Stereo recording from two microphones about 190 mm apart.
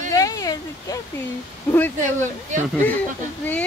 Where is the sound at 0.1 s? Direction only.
15° left (ahead or behind).